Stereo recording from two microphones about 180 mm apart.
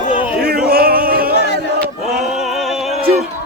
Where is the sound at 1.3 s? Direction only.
70° left (ahead or behind).